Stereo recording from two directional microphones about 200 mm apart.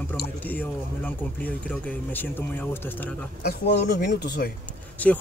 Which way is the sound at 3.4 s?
55° left (ahead or behind).